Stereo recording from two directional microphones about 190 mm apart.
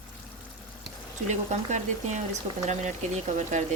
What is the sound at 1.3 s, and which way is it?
A woman's voice, 40° right (ahead or behind).